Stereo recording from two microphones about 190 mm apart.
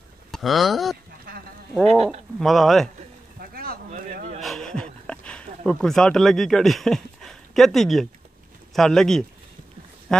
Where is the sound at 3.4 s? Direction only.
50° right (ahead or behind).